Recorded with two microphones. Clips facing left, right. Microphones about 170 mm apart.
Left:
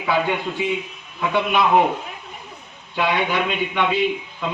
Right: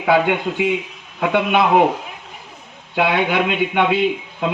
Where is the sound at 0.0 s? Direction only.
55° right (ahead or behind).